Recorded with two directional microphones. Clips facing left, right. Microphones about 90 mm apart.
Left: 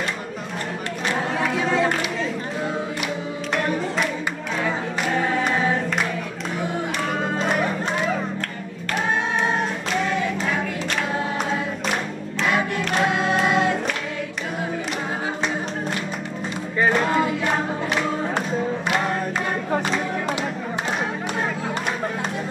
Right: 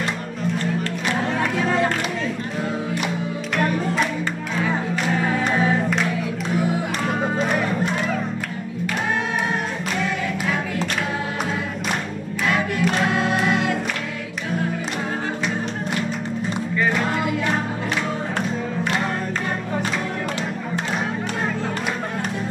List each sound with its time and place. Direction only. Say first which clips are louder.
1.3 s crowd: even; centre (ahead or behind)